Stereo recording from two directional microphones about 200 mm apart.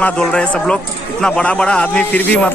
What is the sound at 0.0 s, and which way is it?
Speech, 5° left (ahead or behind).